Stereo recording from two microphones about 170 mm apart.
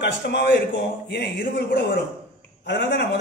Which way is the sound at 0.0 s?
85° left.